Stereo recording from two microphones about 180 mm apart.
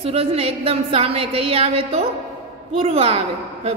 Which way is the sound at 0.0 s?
30° right (ahead or behind).